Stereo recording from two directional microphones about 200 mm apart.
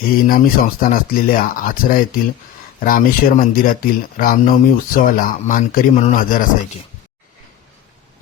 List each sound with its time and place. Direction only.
0.3 s speech: 45° left (ahead or behind)